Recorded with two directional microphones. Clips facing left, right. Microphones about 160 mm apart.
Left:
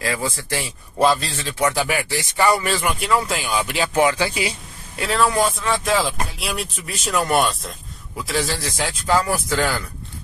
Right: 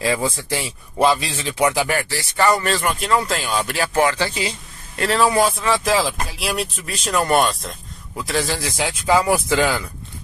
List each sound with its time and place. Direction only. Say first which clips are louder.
0.0 s speech: right 4 dB; 20° right (ahead or behind)
1.9 s speech: even; 15° left (ahead or behind); by 9.8 s 15° right (ahead or behind)